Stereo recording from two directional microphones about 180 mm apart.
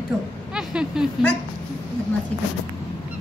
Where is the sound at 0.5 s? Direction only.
5° right (ahead or behind).